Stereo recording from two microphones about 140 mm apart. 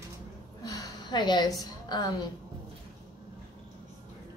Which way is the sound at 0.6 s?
30° left (ahead or behind).